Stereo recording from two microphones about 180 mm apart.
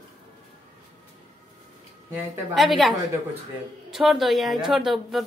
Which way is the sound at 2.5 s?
Centre (ahead or behind).